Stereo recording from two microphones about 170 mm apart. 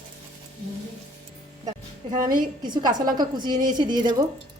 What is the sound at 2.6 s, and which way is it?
A woman's voice, 25° right (ahead or behind).